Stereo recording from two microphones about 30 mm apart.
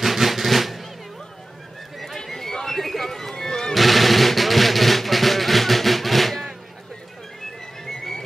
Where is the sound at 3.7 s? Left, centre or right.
Centre.